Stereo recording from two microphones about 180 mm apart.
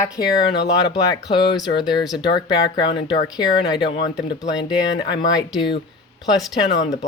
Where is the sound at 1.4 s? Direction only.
25° left (ahead or behind).